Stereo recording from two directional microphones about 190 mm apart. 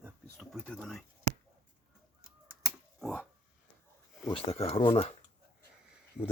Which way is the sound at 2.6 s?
5° left (ahead or behind).